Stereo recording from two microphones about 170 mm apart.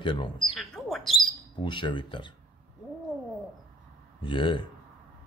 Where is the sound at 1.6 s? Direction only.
30° left (ahead or behind).